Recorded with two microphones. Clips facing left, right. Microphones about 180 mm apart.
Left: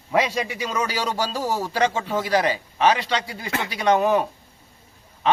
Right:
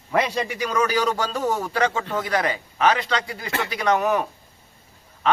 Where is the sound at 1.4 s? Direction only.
10° left (ahead or behind).